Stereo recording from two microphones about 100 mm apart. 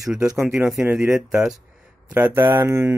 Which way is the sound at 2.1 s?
20° right (ahead or behind).